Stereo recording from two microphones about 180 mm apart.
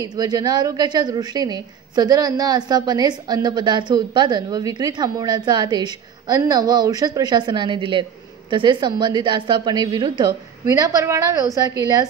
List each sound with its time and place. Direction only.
0.0 s a woman's voice: 20° right (ahead or behind)